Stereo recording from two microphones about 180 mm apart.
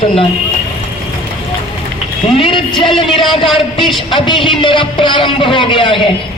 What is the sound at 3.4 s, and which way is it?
Speech, centre (ahead or behind).